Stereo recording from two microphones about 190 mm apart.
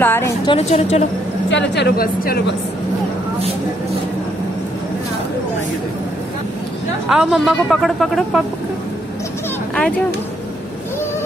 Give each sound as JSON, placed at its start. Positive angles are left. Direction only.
{"t": 0.0, "sound": "a woman's voice", "side_deg": 10}
{"t": 0.5, "sound": "a woman's voice", "side_deg": 30}
{"t": 1.5, "sound": "a woman's voice", "side_deg": 65}
{"t": 7.1, "sound": "speech", "side_deg": 0}
{"t": 9.8, "sound": "speech", "side_deg": 5}